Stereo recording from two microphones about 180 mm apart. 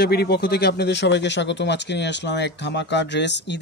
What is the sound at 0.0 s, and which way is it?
Speech, 65° left (ahead or behind).